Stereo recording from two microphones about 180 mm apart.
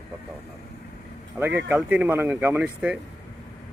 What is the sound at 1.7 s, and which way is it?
Speech, 5° right (ahead or behind).